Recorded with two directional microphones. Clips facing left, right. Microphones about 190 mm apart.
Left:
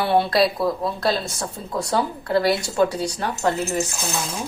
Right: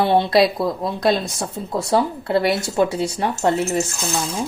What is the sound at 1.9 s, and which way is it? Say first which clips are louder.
Speech: right 3 dB; 25° right (ahead or behind).